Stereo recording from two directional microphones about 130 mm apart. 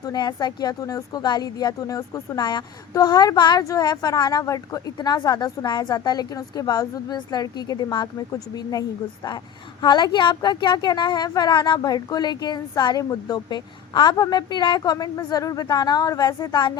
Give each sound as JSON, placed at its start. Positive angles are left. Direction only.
{"t": 0.0, "sound": "a woman's voice", "side_deg": 30}
{"t": 9.8, "sound": "a woman's voice", "side_deg": 35}